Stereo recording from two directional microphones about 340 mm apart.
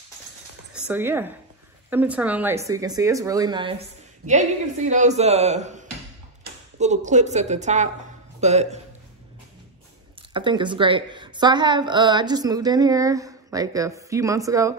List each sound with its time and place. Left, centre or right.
0.8 s a woman's voice: centre
10.3 s a woman's voice: centre